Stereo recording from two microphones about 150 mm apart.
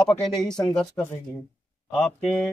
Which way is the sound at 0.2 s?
5° left (ahead or behind).